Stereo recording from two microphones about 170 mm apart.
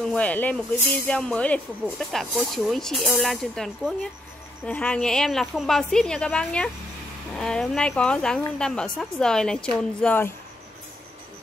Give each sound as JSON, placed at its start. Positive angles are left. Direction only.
{"t": 0.0, "sound": "speech", "side_deg": 5}